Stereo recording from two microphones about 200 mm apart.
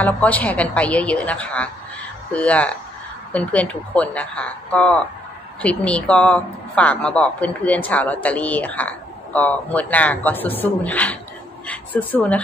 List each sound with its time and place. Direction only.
0.0 s speech: 5° left (ahead or behind)